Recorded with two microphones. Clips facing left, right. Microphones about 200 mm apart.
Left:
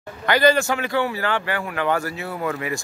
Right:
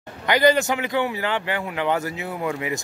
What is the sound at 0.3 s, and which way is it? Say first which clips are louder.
A man's voice: even; 20° right (ahead or behind).